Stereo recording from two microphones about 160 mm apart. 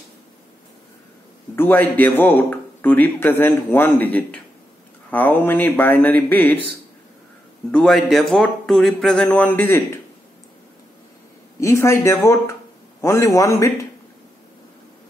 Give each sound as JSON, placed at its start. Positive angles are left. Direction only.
{"t": 1.5, "sound": "speech", "side_deg": 10}
{"t": 7.7, "sound": "speech", "side_deg": 5}
{"t": 11.6, "sound": "a man's voice", "side_deg": 15}